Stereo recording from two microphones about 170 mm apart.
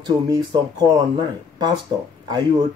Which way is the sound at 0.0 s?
25° right (ahead or behind).